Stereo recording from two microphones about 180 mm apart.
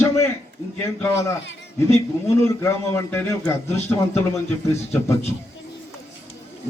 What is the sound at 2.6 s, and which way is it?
Speech, 15° left (ahead or behind).